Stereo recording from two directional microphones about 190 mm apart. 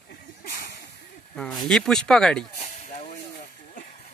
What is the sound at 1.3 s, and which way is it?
Speech, centre (ahead or behind).